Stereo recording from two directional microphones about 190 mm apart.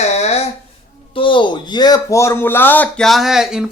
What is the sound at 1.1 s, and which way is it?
Speech, 25° left (ahead or behind).